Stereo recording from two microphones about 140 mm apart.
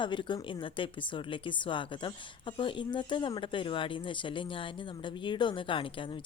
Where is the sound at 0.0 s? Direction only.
35° left (ahead or behind).